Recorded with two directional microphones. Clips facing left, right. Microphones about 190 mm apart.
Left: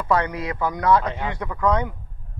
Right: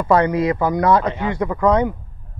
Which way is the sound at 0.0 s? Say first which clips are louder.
Right 7 dB; 50° right (ahead or behind).